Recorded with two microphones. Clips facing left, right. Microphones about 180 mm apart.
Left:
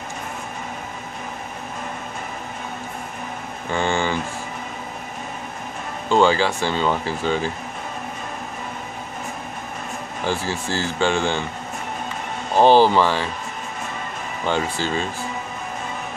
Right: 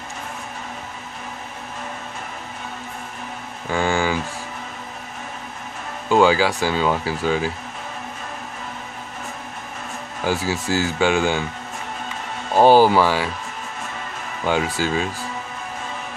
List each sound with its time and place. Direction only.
3.7 s speech: 5° right (ahead or behind)
6.0 s speech: 5° right (ahead or behind)
10.2 s speech: 5° right (ahead or behind)
12.5 s speech: 10° right (ahead or behind)
14.4 s speech: 10° right (ahead or behind)